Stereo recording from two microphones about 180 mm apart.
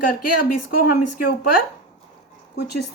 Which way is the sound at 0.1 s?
50° left (ahead or behind).